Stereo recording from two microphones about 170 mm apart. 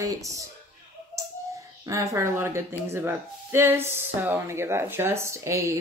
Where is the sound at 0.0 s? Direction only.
20° right (ahead or behind).